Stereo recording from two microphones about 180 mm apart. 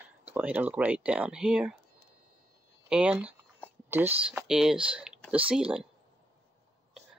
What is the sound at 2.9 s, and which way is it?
Speech, 5° right (ahead or behind).